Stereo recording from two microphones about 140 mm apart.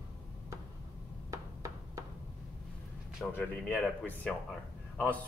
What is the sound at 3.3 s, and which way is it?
Speech, 15° left (ahead or behind).